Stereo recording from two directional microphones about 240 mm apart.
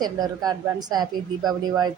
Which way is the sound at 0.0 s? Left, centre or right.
Centre.